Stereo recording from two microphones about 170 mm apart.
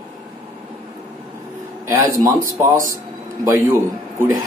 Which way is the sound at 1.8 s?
20° right (ahead or behind).